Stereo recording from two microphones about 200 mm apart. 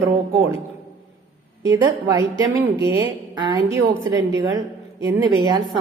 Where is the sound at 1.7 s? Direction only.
15° right (ahead or behind).